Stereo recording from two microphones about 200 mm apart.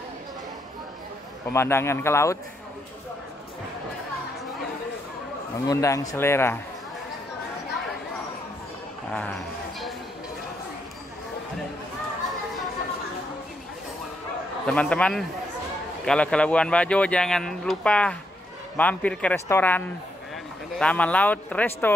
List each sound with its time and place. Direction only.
1.5 s speech: 10° left (ahead or behind)
5.7 s speech: 15° left (ahead or behind)
14.7 s speech: 5° left (ahead or behind)